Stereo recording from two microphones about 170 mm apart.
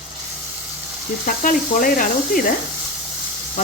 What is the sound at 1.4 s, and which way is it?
Speech, 50° left (ahead or behind).